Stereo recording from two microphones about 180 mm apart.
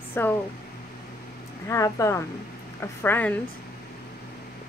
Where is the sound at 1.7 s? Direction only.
15° left (ahead or behind).